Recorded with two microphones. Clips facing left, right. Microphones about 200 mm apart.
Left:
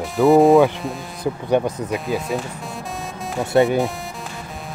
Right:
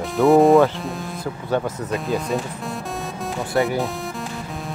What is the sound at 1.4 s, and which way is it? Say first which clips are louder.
Speech: left 3 dB; 15° left (ahead or behind).